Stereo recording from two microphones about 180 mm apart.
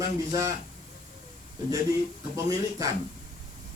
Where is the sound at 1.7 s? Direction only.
15° right (ahead or behind).